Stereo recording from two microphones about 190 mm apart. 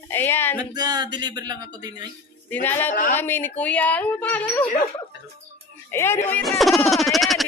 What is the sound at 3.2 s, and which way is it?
A woman's voice, 10° left (ahead or behind).